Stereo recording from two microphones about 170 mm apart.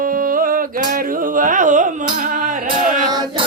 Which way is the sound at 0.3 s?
55° right (ahead or behind).